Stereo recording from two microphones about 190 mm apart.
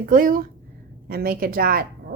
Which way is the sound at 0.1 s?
45° right (ahead or behind).